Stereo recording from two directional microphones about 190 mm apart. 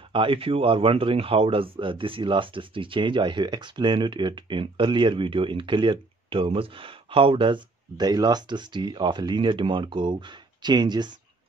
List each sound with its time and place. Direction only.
0.1 s speech: 30° right (ahead or behind)